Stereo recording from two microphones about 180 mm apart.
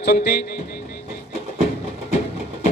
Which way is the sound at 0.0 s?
65° left (ahead or behind).